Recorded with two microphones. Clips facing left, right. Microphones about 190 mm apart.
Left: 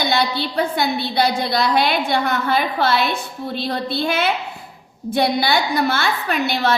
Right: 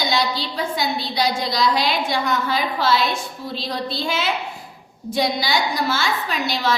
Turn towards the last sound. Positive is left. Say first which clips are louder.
# left 3 dB
turn(degrees=60)  # may be behind; listen again after turning